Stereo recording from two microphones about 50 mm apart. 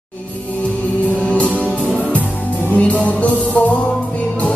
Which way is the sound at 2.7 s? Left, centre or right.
Left.